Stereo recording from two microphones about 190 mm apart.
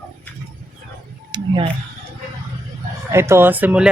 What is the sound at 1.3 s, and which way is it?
Speech, 25° right (ahead or behind).